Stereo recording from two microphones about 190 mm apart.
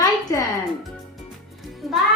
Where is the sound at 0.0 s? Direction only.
15° left (ahead or behind).